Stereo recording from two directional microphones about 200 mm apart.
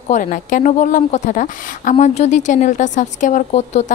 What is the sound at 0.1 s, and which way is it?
A woman's voice, 40° left (ahead or behind).